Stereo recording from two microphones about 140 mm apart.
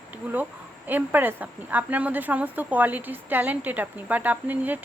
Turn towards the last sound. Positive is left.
turn(degrees=-10)  # may be behind; listen again after turning